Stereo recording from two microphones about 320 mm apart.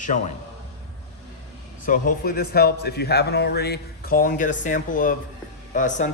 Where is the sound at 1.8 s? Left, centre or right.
Left.